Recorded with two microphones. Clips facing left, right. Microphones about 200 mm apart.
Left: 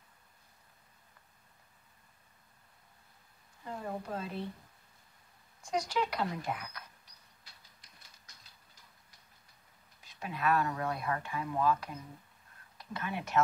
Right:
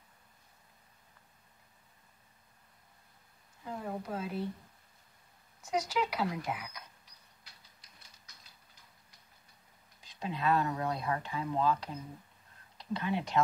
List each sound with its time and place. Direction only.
3.6 s a sound: 5° right (ahead or behind)
5.7 s speech: 5° right (ahead or behind)
10.1 s speech: 25° right (ahead or behind)